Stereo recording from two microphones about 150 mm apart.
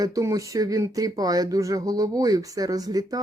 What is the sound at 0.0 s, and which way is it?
Speech, 20° right (ahead or behind).